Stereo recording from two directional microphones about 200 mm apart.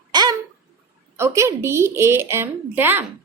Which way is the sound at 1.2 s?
15° right (ahead or behind).